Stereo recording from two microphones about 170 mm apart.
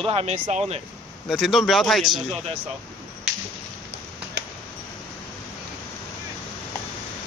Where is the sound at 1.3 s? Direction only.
Centre (ahead or behind).